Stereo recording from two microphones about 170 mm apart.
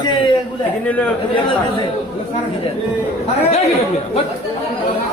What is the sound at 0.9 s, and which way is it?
Speech, 10° left (ahead or behind).